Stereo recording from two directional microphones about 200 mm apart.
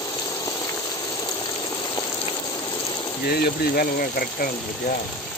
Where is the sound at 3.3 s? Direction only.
50° left (ahead or behind).